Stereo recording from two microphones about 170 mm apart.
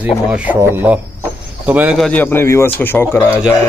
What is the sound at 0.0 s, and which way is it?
Speech, 10° right (ahead or behind).